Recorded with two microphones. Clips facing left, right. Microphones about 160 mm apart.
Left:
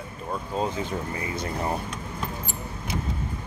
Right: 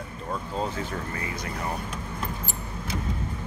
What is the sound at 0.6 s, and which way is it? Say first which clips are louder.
Speech: left 4 dB; 20° left (ahead or behind).